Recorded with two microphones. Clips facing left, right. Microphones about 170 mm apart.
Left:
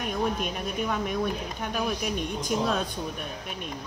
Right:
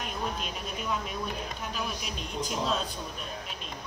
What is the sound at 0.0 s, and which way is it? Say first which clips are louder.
A woman's voice: left 6 dB; 55° left (ahead or behind).